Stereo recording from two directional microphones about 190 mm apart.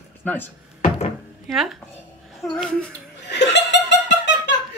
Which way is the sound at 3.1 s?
65° left (ahead or behind).